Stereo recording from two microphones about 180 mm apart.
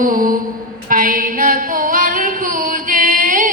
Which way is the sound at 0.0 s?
50° right (ahead or behind).